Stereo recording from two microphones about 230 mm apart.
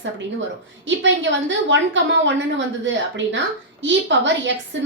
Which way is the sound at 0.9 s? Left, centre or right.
Right.